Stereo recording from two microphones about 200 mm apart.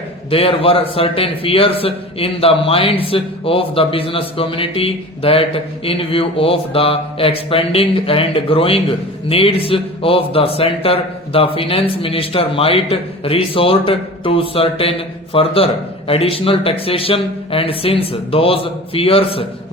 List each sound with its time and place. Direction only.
0.3 s a man's voice: 30° left (ahead or behind)